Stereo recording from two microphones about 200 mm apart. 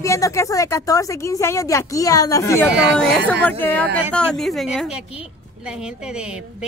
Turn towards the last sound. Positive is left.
turn(degrees=0)  # may be behind; listen again after turning